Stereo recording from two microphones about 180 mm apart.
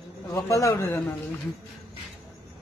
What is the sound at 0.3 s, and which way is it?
Speech, 15° left (ahead or behind).